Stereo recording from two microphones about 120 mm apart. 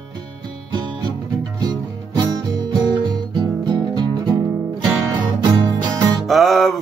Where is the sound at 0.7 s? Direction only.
40° right (ahead or behind).